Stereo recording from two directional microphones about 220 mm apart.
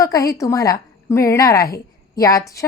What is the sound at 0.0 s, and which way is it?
A woman's voice, 15° left (ahead or behind).